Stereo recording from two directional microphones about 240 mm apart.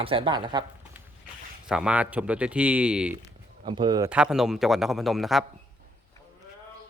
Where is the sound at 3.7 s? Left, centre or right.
Centre.